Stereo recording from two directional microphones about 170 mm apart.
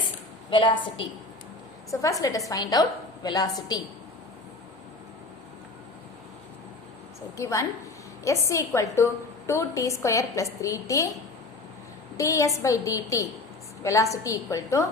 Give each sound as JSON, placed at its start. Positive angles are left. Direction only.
{"t": 0.5, "sound": "a woman's voice", "side_deg": 30}
{"t": 7.4, "sound": "a woman's voice", "side_deg": 15}
{"t": 12.1, "sound": "a woman's voice", "side_deg": 20}